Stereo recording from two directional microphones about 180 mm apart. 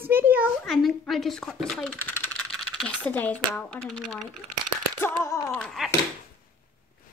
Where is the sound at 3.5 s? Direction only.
5° left (ahead or behind).